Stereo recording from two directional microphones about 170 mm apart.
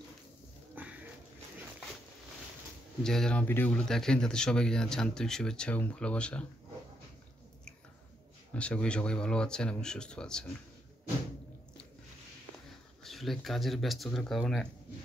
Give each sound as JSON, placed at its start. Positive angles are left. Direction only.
{"t": 0.8, "sound": "a sound", "side_deg": -10}
{"t": 3.0, "sound": "speech", "side_deg": 5}
{"t": 8.5, "sound": "speech", "side_deg": 5}
{"t": 13.0, "sound": "speech", "side_deg": 0}